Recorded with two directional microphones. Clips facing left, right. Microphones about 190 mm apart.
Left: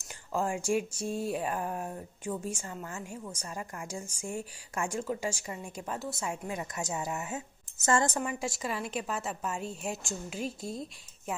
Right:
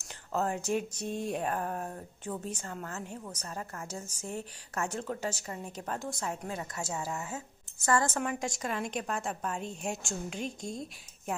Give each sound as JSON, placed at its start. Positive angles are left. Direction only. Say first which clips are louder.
{"t": 0.3, "sound": "speech", "louder": "left 1 dB", "side_deg": 10}
{"t": 8.2, "sound": "a woman's voice", "louder": "even", "side_deg": 5}